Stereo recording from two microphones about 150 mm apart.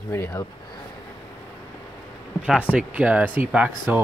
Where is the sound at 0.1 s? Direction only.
20° left (ahead or behind).